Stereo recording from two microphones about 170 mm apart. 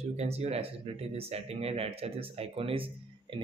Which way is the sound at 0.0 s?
40° right (ahead or behind).